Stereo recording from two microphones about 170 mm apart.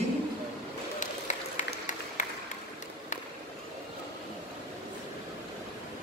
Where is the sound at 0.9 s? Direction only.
45° left (ahead or behind).